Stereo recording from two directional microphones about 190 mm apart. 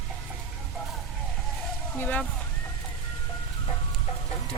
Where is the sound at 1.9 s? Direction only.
10° left (ahead or behind).